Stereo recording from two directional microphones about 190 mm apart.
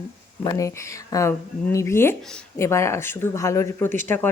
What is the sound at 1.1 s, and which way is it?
Speech, 15° left (ahead or behind).